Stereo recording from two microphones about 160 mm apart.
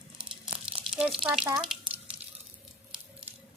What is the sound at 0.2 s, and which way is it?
Crumpling, 5° right (ahead or behind).